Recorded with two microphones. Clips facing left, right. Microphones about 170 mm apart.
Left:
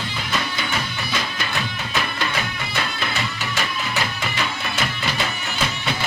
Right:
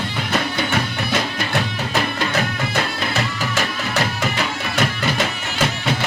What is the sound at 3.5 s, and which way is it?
Music, 45° right (ahead or behind).